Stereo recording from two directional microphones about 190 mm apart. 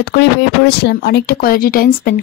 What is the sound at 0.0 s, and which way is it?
Speech, 65° left (ahead or behind).